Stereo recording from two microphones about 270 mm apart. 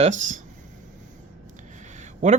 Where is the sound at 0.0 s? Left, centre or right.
Right.